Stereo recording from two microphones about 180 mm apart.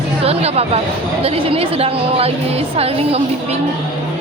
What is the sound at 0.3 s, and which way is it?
A woman's voice, 35° right (ahead or behind).